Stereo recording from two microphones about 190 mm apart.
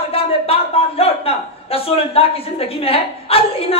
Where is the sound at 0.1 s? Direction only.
30° left (ahead or behind).